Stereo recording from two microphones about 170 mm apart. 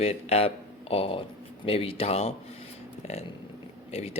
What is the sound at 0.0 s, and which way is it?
Speech, 35° left (ahead or behind).